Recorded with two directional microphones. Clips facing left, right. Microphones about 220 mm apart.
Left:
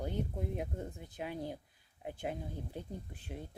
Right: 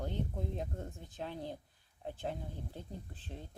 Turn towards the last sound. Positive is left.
turn(degrees=10)  # may be behind; listen again after turning